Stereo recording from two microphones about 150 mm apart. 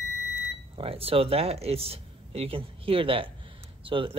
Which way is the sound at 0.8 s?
40° right (ahead or behind).